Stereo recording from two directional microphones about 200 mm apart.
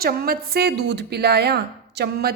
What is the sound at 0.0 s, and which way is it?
A woman's voice, 50° right (ahead or behind).